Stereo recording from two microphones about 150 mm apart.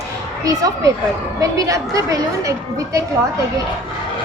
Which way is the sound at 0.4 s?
20° right (ahead or behind).